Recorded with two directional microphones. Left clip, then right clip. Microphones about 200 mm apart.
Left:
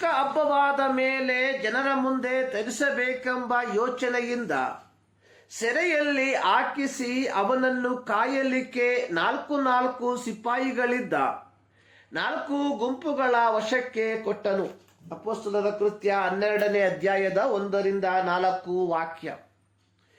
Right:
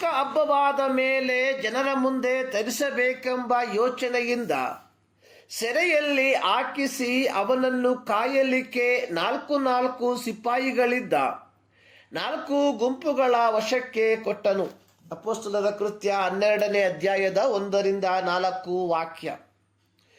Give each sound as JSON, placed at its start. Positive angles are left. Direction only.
{"t": 0.0, "sound": "a woman's voice", "side_deg": -30}